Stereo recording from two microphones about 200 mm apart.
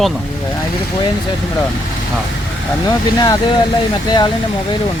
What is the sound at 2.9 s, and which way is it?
Speech, 20° left (ahead or behind).